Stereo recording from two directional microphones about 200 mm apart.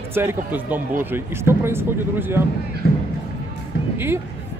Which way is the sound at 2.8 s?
55° left (ahead or behind).